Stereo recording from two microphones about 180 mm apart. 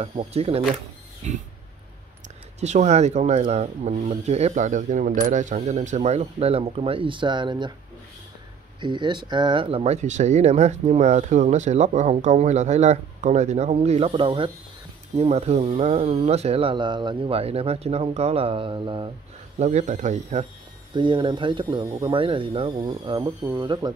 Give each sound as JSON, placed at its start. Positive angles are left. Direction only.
{"t": 0.0, "sound": "speech", "side_deg": -35}
{"t": 2.6, "sound": "speech", "side_deg": -40}
{"t": 8.8, "sound": "speech", "side_deg": -25}
{"t": 19.6, "sound": "speech", "side_deg": -40}
{"t": 20.9, "sound": "speech", "side_deg": -25}